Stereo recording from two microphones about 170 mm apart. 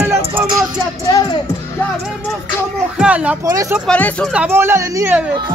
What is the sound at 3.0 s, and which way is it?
Speech, 5° right (ahead or behind).